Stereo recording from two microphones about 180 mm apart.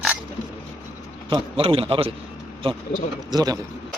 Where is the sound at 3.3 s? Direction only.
20° right (ahead or behind).